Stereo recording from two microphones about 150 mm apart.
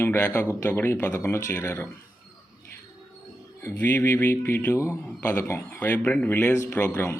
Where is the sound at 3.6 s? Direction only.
15° left (ahead or behind).